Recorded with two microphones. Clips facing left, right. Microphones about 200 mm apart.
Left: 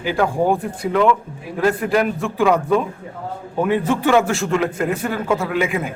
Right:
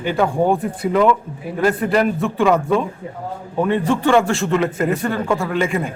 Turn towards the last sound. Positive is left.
turn(degrees=5)  # may be behind; listen again after turning